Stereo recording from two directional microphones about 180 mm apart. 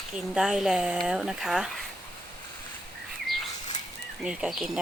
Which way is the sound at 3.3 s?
Centre (ahead or behind).